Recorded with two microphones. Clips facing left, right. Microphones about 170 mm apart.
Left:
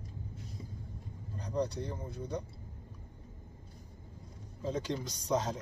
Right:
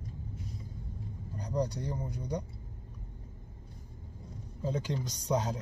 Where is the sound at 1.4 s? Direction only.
10° right (ahead or behind).